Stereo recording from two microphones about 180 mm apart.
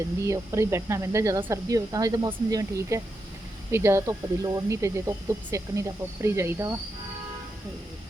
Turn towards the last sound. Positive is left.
turn(degrees=-15)  # may be behind; listen again after turning